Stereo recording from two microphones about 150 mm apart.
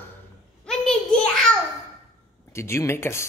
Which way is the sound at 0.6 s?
5° left (ahead or behind).